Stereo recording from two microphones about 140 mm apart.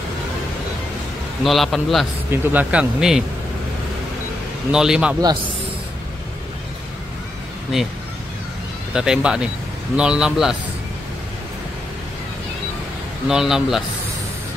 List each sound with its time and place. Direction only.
1.4 s a man's voice: centre (ahead or behind)
2.3 s speech: 10° right (ahead or behind)
4.6 s a man's voice: 5° right (ahead or behind)
8.9 s a man's voice: 5° right (ahead or behind)
13.3 s a man's voice: 5° right (ahead or behind)